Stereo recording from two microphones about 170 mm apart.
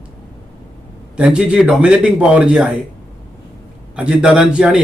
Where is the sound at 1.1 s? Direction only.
5° right (ahead or behind).